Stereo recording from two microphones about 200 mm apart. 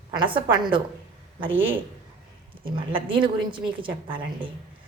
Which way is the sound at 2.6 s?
25° right (ahead or behind).